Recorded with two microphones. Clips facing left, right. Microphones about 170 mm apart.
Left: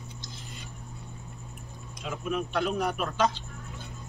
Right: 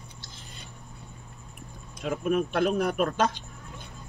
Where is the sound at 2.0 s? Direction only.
50° right (ahead or behind).